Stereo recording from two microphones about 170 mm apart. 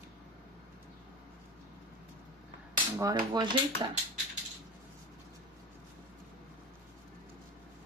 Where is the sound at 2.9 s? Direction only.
25° right (ahead or behind).